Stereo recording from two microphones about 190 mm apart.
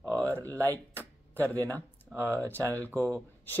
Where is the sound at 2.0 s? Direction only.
15° right (ahead or behind).